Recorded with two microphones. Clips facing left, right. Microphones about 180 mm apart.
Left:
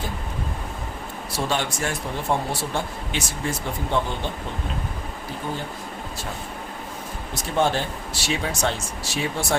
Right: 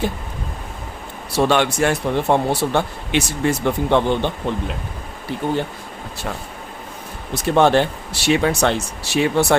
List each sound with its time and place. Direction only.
1.4 s speech: 70° right (ahead or behind)
5.4 s speech: 70° right (ahead or behind)
7.4 s speech: 70° right (ahead or behind)